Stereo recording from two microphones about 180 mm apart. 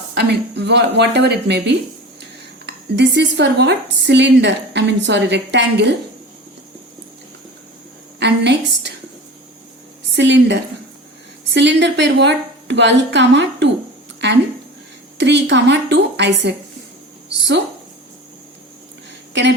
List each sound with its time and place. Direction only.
0.1 s speech: 65° right (ahead or behind)
8.2 s speech: 70° right (ahead or behind)
10.2 s a woman's voice: 80° right
19.3 s a sound: 80° right